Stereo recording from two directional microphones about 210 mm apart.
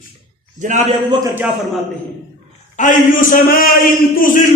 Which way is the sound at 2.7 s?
40° left (ahead or behind).